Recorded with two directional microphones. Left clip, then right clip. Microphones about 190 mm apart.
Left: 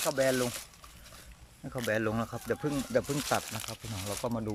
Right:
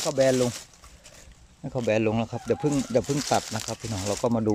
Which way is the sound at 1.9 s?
15° right (ahead or behind).